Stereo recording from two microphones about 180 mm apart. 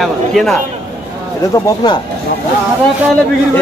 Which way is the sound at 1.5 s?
20° left (ahead or behind).